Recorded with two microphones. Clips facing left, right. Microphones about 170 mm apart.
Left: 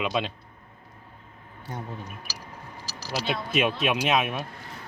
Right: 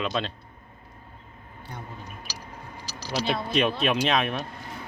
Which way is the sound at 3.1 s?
5° left (ahead or behind).